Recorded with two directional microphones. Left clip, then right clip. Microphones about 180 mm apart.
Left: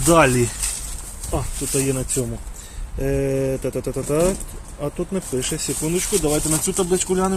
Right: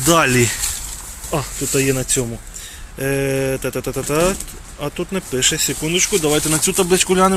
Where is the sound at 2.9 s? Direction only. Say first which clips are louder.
Right 2 dB; centre (ahead or behind).